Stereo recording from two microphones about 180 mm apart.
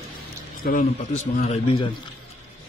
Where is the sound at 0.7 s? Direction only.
45° left (ahead or behind).